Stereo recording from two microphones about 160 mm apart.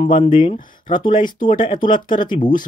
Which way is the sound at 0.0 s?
35° left (ahead or behind).